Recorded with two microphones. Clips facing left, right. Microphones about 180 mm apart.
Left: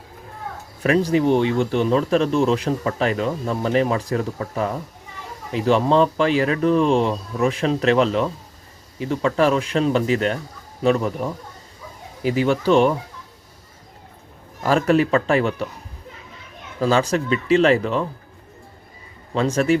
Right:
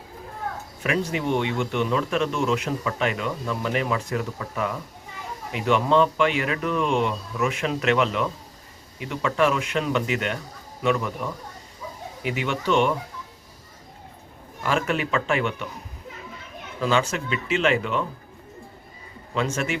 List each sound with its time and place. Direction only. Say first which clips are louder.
0.8 s speech: left 8 dB; 35° left (ahead or behind)
14.6 s speech: left 7 dB; 40° left (ahead or behind)
16.8 s speech: left 5 dB; 35° left (ahead or behind)
19.3 s speech: left 8 dB; 35° left (ahead or behind)